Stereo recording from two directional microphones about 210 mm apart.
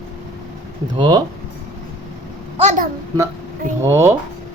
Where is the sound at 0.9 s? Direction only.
20° right (ahead or behind).